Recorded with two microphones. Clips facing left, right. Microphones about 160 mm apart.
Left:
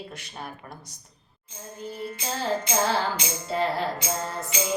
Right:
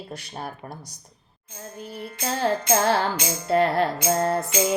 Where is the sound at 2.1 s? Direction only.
55° right (ahead or behind).